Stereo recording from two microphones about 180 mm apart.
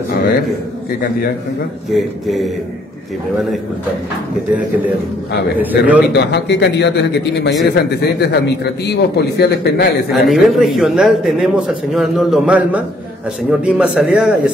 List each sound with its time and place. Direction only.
1.9 s a man's voice: centre (ahead or behind)
5.6 s a man's voice: 10° right (ahead or behind)
6.1 s a man's voice: 75° left (ahead or behind)
10.1 s a man's voice: centre (ahead or behind)